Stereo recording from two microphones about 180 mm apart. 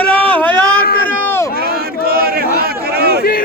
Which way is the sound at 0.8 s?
60° left (ahead or behind).